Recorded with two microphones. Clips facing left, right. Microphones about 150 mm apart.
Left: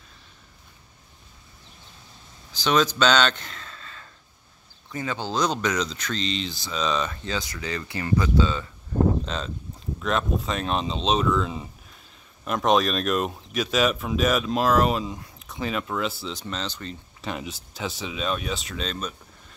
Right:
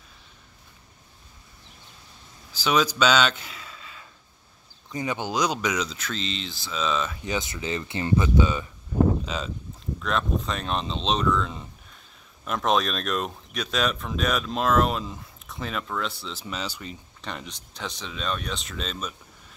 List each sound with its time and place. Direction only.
2.5 s speech: 10° right (ahead or behind)
7.2 s speech: 20° right (ahead or behind)
9.2 s speech: 5° right (ahead or behind)
17.2 s speech: 5° left (ahead or behind)